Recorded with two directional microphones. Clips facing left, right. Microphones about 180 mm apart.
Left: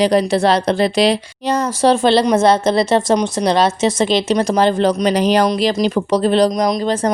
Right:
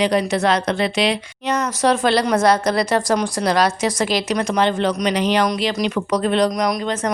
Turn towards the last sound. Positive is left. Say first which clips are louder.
# left 4 dB
turn(degrees=30)  # may be behind; listen again after turning